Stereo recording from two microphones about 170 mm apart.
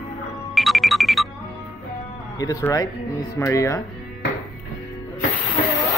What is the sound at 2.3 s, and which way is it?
Speech, 20° left (ahead or behind).